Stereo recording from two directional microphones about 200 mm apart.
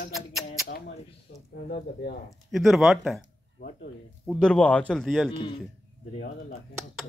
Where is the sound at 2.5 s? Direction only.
Centre (ahead or behind).